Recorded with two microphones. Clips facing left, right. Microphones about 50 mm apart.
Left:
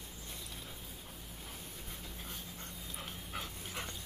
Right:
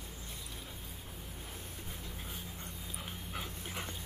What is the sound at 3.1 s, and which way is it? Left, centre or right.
Dog, centre.